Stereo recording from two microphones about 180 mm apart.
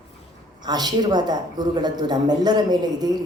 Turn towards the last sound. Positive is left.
turn(degrees=-20)  # may be behind; listen again after turning